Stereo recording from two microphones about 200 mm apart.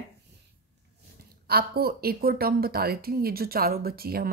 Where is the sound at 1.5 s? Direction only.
50° right (ahead or behind).